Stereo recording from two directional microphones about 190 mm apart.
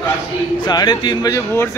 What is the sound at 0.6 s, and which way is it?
Speech, 20° left (ahead or behind).